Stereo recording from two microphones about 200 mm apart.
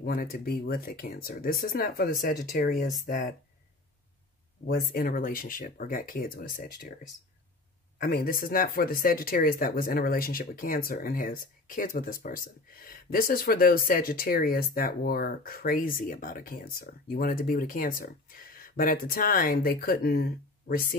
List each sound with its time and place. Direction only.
0.0 s speech: 45° left (ahead or behind)
4.6 s speech: 50° left (ahead or behind)
8.0 s speech: 50° left (ahead or behind)